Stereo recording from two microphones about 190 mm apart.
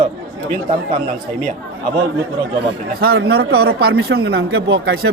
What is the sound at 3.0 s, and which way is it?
Speech, 55° right (ahead or behind).